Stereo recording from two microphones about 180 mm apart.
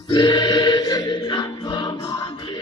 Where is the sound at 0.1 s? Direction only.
25° left (ahead or behind).